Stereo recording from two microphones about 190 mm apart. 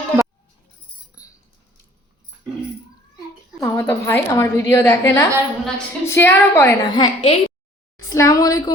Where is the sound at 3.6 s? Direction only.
15° left (ahead or behind).